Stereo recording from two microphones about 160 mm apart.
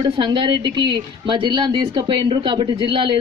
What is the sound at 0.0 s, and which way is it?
A man's voice, 30° right (ahead or behind).